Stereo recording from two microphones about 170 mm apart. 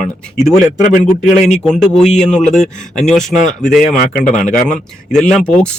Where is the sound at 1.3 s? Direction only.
45° left (ahead or behind).